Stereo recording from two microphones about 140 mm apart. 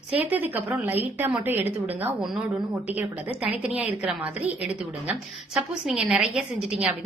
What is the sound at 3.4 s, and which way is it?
Speech, 10° right (ahead or behind).